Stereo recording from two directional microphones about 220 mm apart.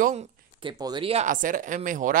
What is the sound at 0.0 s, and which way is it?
Speech, 25° right (ahead or behind).